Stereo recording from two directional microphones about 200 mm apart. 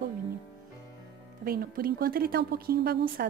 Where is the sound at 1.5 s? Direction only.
50° right (ahead or behind).